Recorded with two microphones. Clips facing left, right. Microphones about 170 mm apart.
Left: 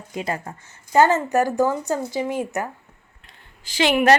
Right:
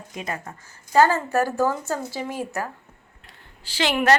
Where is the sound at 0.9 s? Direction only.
20° left (ahead or behind).